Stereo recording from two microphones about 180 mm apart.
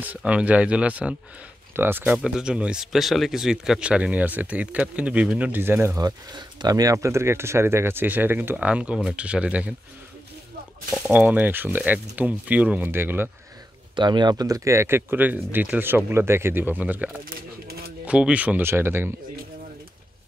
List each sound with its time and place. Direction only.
0.0 s speech: 10° right (ahead or behind)
5.9 s speech: 25° right (ahead or behind); by 9.8 s 5° right (ahead or behind)
11.0 s speech: 5° right (ahead or behind)
13.9 s speech: 25° right (ahead or behind); by 17.2 s 10° right (ahead or behind)
17.2 s a sound: 55° right (ahead or behind)
18.0 s speech: 5° right (ahead or behind)